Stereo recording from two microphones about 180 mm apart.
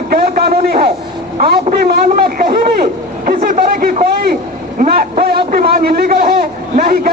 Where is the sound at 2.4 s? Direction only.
55° right (ahead or behind).